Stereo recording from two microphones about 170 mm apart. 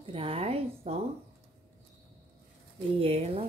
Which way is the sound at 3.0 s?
35° right (ahead or behind).